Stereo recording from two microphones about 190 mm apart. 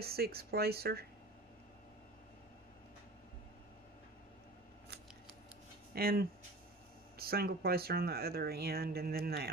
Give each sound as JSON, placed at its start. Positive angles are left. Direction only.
{"t": 0.0, "sound": "speech", "side_deg": -55}
{"t": 5.9, "sound": "speech", "side_deg": -55}